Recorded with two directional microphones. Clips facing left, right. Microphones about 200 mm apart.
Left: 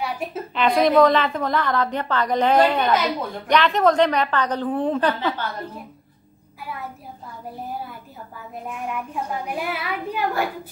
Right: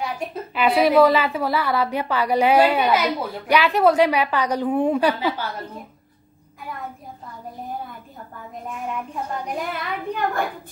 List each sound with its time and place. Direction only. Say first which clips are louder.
0.0 s a woman's voice: even; 5° right (ahead or behind)
8.6 s a child's voice: even; 5° left (ahead or behind)